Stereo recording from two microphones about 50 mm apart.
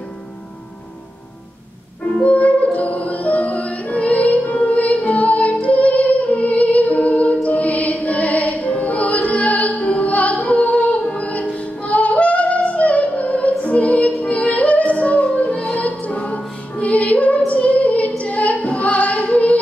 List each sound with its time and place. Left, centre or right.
2.1 s music: left
17.5 s female singing: left